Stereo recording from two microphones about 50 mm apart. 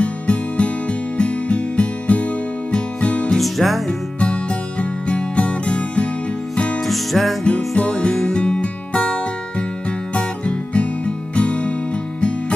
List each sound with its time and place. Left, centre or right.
0.0 s music: left
3.3 s music: centre
4.2 s music: left
6.9 s music: centre
7.4 s music: left